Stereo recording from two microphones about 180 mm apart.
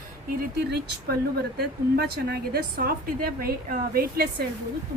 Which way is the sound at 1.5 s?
60° right (ahead or behind).